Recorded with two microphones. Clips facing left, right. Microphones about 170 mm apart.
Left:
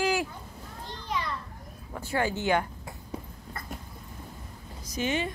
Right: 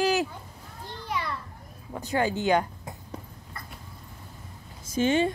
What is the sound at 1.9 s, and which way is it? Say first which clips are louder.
Speech: right 2 dB; 20° right (ahead or behind).